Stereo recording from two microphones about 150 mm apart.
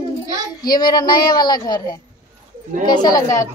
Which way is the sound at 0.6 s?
30° left (ahead or behind).